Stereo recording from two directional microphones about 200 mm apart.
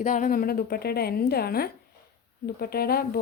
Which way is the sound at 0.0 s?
40° left (ahead or behind).